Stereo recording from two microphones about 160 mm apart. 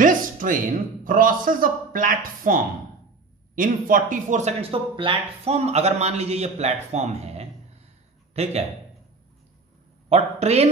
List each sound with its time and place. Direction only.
0.0 s a sound: 55° right (ahead or behind)
1.0 s a man's voice: 60° right (ahead or behind); by 7.4 s 45° right (ahead or behind)
10.0 s speech: 45° right (ahead or behind)